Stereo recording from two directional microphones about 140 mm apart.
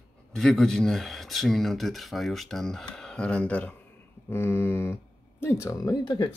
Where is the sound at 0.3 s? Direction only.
5° left (ahead or behind).